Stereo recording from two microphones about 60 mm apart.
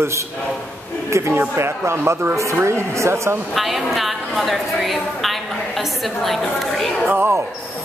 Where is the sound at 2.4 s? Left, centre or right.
Right.